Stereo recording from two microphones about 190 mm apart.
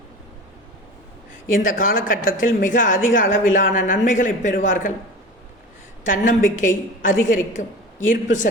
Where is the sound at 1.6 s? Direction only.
45° left (ahead or behind).